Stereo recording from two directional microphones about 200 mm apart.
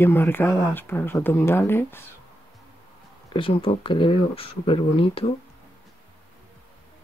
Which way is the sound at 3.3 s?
25° left (ahead or behind).